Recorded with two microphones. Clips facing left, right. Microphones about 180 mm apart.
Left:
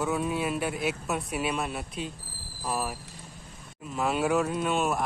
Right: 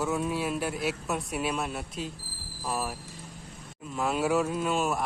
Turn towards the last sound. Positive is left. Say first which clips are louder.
# left 1 dB
turn(degrees=0)  # may be behind; listen again after turning